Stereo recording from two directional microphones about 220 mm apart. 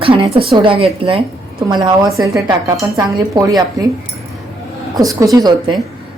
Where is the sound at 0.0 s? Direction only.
25° right (ahead or behind).